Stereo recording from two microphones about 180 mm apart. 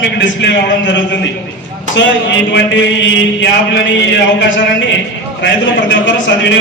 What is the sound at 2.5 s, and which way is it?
A man's voice, 80° left.